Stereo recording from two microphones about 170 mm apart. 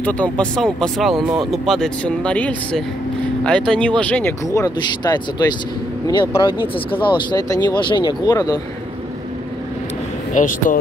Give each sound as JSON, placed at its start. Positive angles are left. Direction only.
{"t": 0.0, "sound": "speech", "side_deg": 5}
{"t": 10.3, "sound": "speech", "side_deg": 50}